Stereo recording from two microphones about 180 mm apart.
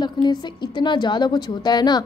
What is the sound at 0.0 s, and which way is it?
A woman's voice, 25° left (ahead or behind).